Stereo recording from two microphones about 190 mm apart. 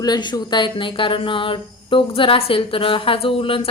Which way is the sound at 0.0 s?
20° left (ahead or behind).